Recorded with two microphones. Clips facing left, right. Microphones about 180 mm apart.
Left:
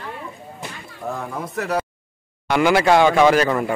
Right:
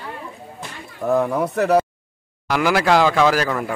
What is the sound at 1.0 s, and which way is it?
Speech, 70° right (ahead or behind).